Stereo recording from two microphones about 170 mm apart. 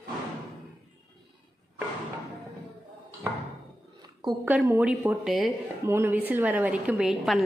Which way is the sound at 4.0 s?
25° right (ahead or behind).